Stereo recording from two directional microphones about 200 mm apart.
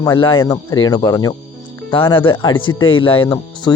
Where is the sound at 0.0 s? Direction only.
25° left (ahead or behind).